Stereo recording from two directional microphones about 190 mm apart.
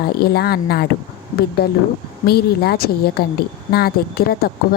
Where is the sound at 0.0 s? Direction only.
55° left (ahead or behind).